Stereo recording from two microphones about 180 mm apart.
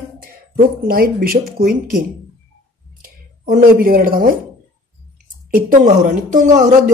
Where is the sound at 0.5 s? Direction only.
55° right (ahead or behind).